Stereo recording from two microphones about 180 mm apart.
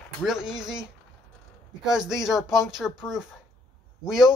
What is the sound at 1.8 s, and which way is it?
Speech, 5° right (ahead or behind).